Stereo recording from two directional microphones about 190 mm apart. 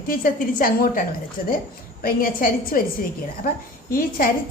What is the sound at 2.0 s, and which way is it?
Speech, 50° left (ahead or behind).